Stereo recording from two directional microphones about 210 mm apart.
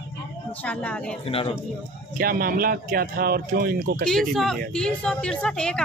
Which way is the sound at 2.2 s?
45° right (ahead or behind).